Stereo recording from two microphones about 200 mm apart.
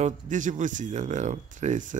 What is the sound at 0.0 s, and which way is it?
Speech, 40° right (ahead or behind).